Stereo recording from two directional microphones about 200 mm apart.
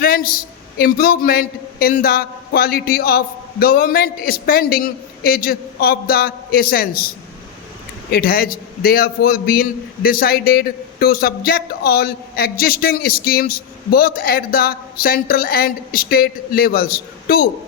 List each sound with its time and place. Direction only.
0.0 s a man's voice: 45° left (ahead or behind)
8.1 s a man's voice: 50° left (ahead or behind)